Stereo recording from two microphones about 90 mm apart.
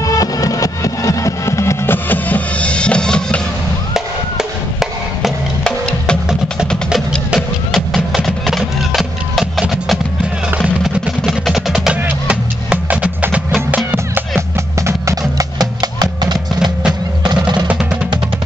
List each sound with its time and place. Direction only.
0.0 s music: 40° left (ahead or behind)
2.0 s music: 20° left (ahead or behind)
3.9 s music: 5° right (ahead or behind)
5.6 s music: 10° left (ahead or behind)
7.3 s music: centre (ahead or behind)
11.9 s music: 15° right (ahead or behind)
14.8 s music: 35° right (ahead or behind); by 17.6 s 55° right (ahead or behind)
17.6 s music: 15° right (ahead or behind)